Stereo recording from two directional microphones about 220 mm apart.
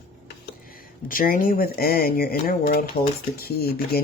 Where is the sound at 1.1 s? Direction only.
40° left (ahead or behind).